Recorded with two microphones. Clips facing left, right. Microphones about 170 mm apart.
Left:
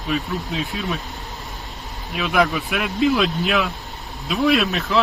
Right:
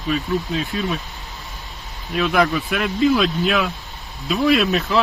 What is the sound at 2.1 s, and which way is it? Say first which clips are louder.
Speech: right 2 dB; centre (ahead or behind).